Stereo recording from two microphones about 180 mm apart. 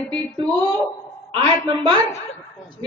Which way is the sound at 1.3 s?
25° right (ahead or behind).